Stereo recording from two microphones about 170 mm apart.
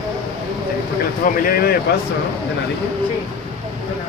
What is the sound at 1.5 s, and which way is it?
Speech, 60° left (ahead or behind).